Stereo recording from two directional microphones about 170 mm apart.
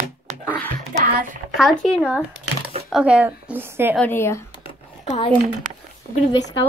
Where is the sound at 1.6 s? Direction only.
Centre (ahead or behind).